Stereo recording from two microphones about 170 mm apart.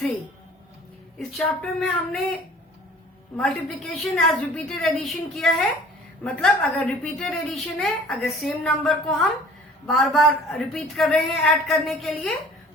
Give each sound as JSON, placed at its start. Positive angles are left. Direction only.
{"t": 1.4, "sound": "a woman's voice", "side_deg": 5}
{"t": 3.3, "sound": "a woman's voice", "side_deg": 0}